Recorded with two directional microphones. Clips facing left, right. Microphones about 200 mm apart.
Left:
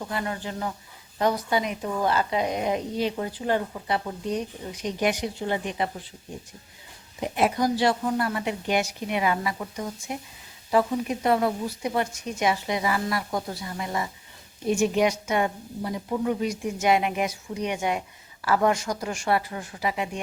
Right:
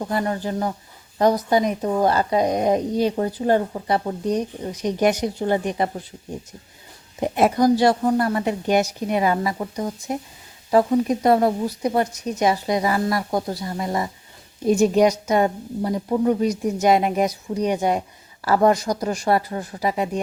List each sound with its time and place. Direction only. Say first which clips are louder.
0.0 s speech: right 7 dB; 40° right (ahead or behind)
7.2 s speech: right 6 dB; 45° right (ahead or behind)